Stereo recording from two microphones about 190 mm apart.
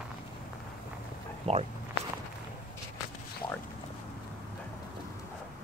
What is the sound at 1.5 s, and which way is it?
Speech, 30° right (ahead or behind).